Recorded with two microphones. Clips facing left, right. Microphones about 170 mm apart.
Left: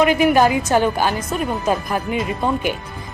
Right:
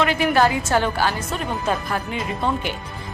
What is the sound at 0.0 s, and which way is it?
Speech, 15° left (ahead or behind).